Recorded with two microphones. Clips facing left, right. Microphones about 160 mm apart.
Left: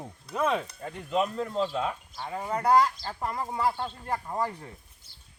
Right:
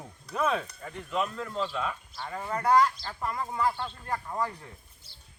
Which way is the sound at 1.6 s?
30° left (ahead or behind).